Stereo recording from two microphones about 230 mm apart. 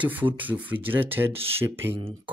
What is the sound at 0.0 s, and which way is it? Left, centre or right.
Speech, centre.